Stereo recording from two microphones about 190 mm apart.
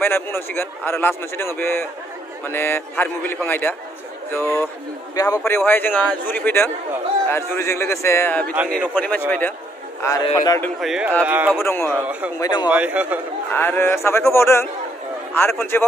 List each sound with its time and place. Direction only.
0.0 s a man's voice: 10° left (ahead or behind)
5.4 s a man's voice: 5° left (ahead or behind)
8.6 s speech: 5° right (ahead or behind)
8.9 s a man's voice: 10° left (ahead or behind)
10.3 s a man's voice: 15° left (ahead or behind)
10.8 s a man's voice: 5° right (ahead or behind)
11.6 s a man's voice: 10° left (ahead or behind)
12.4 s a man's voice: 25° left (ahead or behind)
12.6 s a man's voice: 5° right (ahead or behind)
13.5 s a man's voice: 10° left (ahead or behind)